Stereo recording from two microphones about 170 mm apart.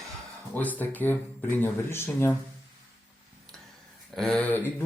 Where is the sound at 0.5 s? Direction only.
10° left (ahead or behind).